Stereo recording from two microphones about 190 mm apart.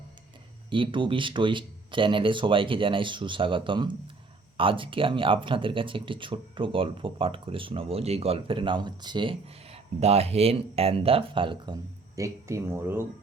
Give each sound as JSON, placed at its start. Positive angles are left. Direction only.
{"t": 0.7, "sound": "speech", "side_deg": -25}